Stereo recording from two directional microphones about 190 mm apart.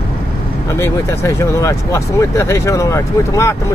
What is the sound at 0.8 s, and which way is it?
Speech, 15° left (ahead or behind).